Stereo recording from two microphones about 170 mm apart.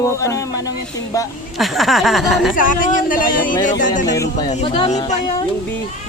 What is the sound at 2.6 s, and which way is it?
Speech, 50° left (ahead or behind).